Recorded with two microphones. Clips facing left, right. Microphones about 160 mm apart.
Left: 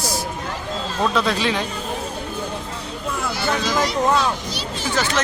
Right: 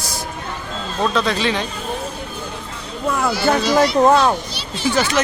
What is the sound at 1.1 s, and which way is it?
Speech, 5° left (ahead or behind).